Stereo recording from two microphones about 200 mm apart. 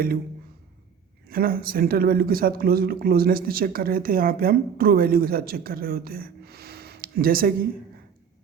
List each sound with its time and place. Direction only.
1.3 s speech: 45° right (ahead or behind)